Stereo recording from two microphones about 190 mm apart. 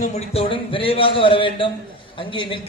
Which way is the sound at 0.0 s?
35° left (ahead or behind).